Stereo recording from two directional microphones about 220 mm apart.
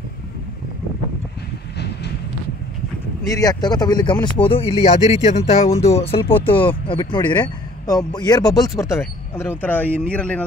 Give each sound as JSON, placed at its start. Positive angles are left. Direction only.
{"t": 3.3, "sound": "a man's voice", "side_deg": 15}